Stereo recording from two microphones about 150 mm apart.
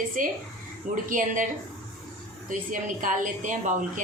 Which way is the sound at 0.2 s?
65° right (ahead or behind).